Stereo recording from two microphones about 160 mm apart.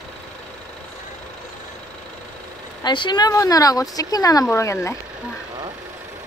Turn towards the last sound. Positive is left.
turn(degrees=20)  # may be behind; listen again after turning